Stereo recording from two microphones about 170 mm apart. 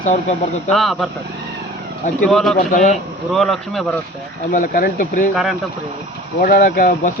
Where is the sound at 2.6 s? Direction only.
50° left (ahead or behind).